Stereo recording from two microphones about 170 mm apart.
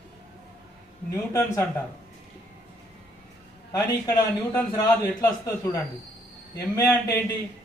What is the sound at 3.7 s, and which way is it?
A man's voice, 15° left (ahead or behind).